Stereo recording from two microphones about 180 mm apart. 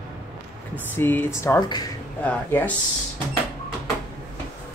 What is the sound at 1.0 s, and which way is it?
Speech, 10° left (ahead or behind).